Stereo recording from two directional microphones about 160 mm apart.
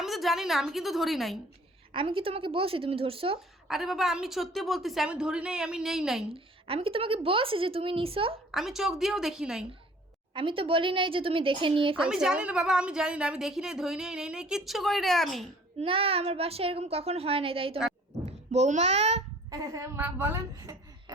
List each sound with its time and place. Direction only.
0.0 s a woman's voice: centre (ahead or behind)
1.9 s a woman's voice: 35° right (ahead or behind)
3.7 s a woman's voice: centre (ahead or behind)
6.3 s a woman's voice: 35° right (ahead or behind)
8.5 s a woman's voice: centre (ahead or behind)
10.3 s a woman's voice: 35° right (ahead or behind)
12.0 s a woman's voice: 5° right (ahead or behind)
15.8 s a woman's voice: 35° right (ahead or behind)
19.5 s a woman's voice: 20° right (ahead or behind)